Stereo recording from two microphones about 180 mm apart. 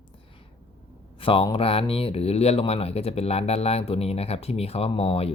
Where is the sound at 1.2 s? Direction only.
30° left (ahead or behind).